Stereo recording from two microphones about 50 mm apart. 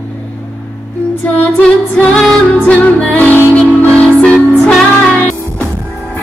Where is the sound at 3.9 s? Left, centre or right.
Left.